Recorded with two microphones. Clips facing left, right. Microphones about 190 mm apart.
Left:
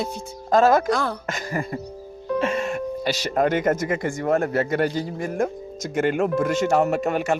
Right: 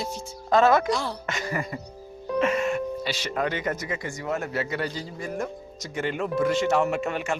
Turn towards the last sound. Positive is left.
turn(degrees=40)  # may be behind; listen again after turning